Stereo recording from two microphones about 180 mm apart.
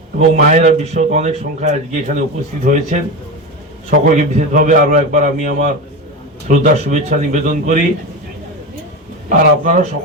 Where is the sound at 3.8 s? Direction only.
50° right (ahead or behind).